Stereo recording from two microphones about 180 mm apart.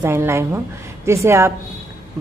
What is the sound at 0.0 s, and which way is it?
A woman's voice, 15° right (ahead or behind).